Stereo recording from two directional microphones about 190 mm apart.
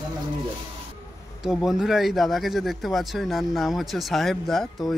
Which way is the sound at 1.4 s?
Centre (ahead or behind).